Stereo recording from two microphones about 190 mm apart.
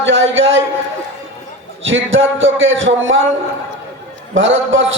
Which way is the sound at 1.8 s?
90° right.